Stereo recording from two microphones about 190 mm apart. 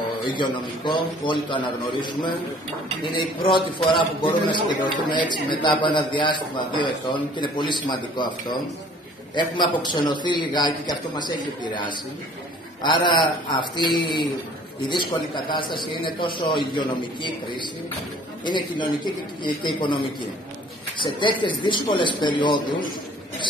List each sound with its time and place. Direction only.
0.2 s a man's voice: 25° left (ahead or behind)
12.8 s a man's voice: 25° left (ahead or behind)
21.0 s a man's voice: 25° left (ahead or behind)